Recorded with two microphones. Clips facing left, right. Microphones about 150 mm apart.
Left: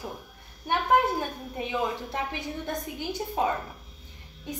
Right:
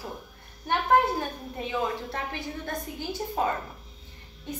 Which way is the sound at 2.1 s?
15° left (ahead or behind).